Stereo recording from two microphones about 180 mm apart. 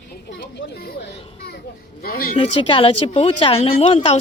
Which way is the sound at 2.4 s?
30° left (ahead or behind).